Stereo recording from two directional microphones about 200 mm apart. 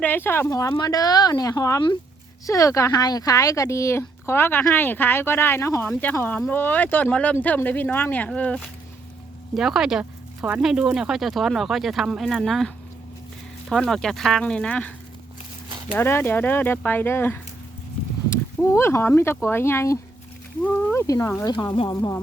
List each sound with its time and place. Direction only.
0.0 s speech: 10° left (ahead or behind)
16.0 s speech: 10° left (ahead or behind)